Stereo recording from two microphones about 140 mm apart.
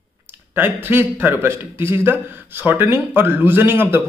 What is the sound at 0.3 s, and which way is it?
Speech, 15° right (ahead or behind).